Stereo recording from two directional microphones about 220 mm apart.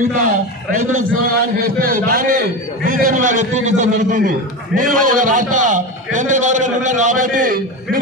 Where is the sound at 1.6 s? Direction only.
40° right (ahead or behind).